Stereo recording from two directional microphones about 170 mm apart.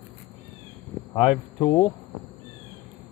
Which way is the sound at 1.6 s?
20° left (ahead or behind).